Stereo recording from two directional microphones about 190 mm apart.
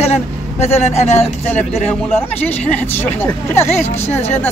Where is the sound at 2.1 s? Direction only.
10° left (ahead or behind).